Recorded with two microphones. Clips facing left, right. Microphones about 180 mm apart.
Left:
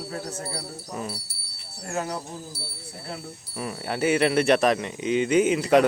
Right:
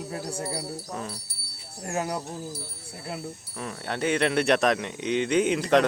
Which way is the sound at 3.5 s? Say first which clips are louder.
Left 4 dB; 10° left (ahead or behind).